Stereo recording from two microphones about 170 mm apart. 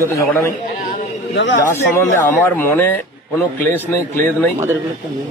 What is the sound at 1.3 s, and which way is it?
Speech, 90° left.